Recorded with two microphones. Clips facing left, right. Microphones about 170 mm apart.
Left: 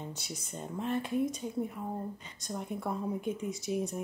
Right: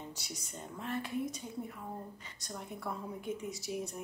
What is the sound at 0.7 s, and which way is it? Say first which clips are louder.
A woman's voice: left 6 dB; 20° left (ahead or behind).